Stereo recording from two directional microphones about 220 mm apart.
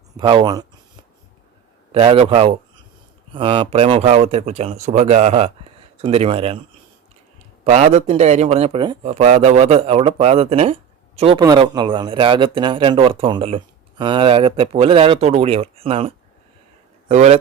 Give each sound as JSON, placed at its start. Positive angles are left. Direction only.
{"t": 0.2, "sound": "speech", "side_deg": -20}
{"t": 1.9, "sound": "speech", "side_deg": -25}
{"t": 7.6, "sound": "speech", "side_deg": -30}